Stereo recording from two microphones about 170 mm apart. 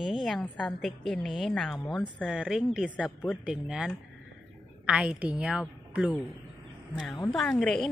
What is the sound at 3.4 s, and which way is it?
A woman's voice, 5° right (ahead or behind).